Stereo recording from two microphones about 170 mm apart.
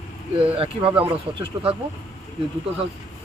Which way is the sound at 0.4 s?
30° right (ahead or behind).